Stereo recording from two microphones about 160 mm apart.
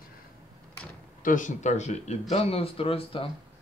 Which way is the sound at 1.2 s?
55° left (ahead or behind).